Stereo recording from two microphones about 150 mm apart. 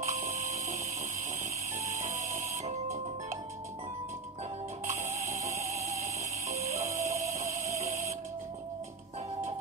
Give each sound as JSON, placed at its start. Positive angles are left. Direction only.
{"t": 0.0, "sound": "a sound", "side_deg": -50}
{"t": 1.9, "sound": "music", "side_deg": -50}
{"t": 4.8, "sound": "music", "side_deg": -55}
{"t": 6.5, "sound": "music", "side_deg": -45}